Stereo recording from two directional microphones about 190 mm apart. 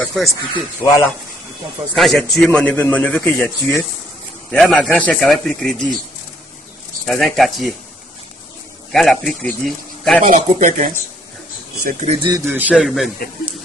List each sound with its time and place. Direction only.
0.0 s snake: centre (ahead or behind)
0.8 s a man's voice: 10° right (ahead or behind)
7.1 s speech: centre (ahead or behind)
8.9 s speech: centre (ahead or behind)
10.3 s speech: 45° right (ahead or behind)
12.2 s speech: 20° right (ahead or behind)
12.5 s speech: 5° right (ahead or behind)